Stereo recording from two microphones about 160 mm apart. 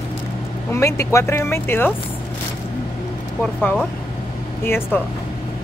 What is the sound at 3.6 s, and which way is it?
Speech, 10° left (ahead or behind).